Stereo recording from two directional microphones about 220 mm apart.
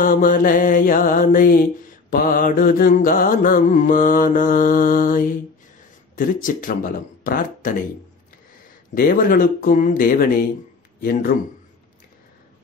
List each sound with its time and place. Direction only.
0.0 s mantra: 40° left (ahead or behind)
6.1 s speech: 40° left (ahead or behind)
8.9 s mantra: 40° left (ahead or behind)